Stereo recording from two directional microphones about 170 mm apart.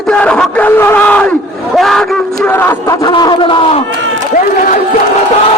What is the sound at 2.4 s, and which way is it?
Speech, 10° left (ahead or behind).